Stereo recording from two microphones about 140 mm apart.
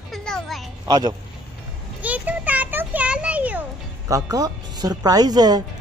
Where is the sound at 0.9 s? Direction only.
30° right (ahead or behind).